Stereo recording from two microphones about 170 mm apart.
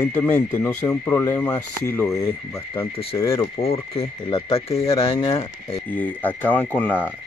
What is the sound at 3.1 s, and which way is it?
Speech, 20° left (ahead or behind).